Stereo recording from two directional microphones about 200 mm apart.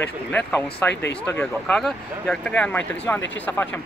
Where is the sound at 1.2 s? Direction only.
5° left (ahead or behind).